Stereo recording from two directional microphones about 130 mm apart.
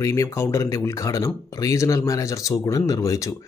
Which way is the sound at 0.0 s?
25° left (ahead or behind).